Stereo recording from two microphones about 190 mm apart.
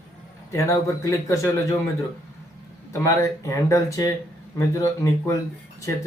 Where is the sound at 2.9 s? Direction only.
15° left (ahead or behind).